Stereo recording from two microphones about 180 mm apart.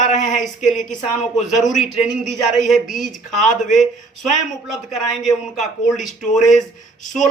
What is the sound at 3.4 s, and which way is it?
Speech, 45° left (ahead or behind).